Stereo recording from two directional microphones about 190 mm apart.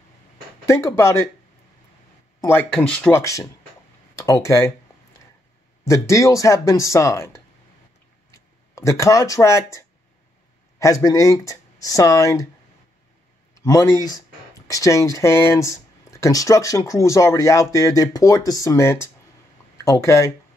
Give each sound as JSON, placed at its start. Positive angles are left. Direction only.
{"t": 0.7, "sound": "speech", "side_deg": 15}
{"t": 2.4, "sound": "speech", "side_deg": 10}
{"t": 5.9, "sound": "speech", "side_deg": 15}
{"t": 13.6, "sound": "speech", "side_deg": 15}